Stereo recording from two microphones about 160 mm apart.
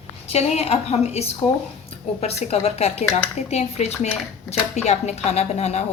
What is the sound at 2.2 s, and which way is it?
A woman's voice, 40° left (ahead or behind).